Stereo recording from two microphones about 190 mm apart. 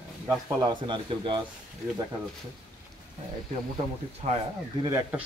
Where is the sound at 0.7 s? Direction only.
25° right (ahead or behind).